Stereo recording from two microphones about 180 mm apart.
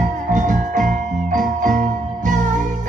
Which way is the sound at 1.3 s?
45° right (ahead or behind).